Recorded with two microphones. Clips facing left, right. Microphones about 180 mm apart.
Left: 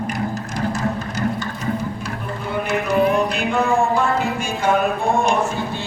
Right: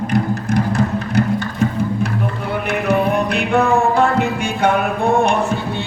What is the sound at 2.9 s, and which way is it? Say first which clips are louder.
Music: right 1 dB; 60° right (ahead or behind).